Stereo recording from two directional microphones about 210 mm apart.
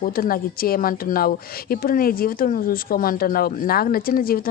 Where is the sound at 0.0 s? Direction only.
45° left (ahead or behind).